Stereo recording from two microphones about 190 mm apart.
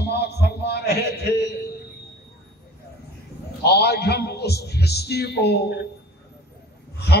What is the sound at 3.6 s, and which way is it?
A man's voice, 60° left (ahead or behind).